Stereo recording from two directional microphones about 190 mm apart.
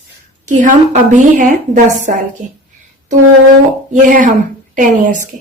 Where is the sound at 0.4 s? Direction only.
40° right (ahead or behind).